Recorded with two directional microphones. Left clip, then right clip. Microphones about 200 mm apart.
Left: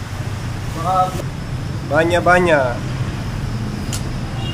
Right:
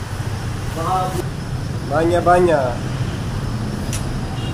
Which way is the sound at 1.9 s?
60° left (ahead or behind).